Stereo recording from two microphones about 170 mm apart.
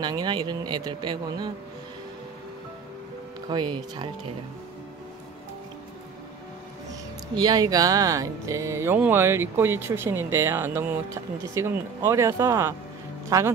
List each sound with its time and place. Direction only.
0.0 s speech: 25° right (ahead or behind)
3.4 s speech: 25° right (ahead or behind)
6.9 s speech: 25° right (ahead or behind)